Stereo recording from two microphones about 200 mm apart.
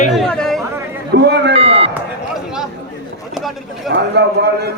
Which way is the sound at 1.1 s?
55° right (ahead or behind).